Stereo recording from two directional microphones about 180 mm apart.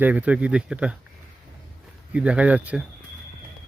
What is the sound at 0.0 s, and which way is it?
Speech, 10° right (ahead or behind).